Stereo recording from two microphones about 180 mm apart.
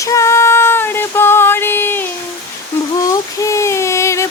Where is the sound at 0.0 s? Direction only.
15° left (ahead or behind).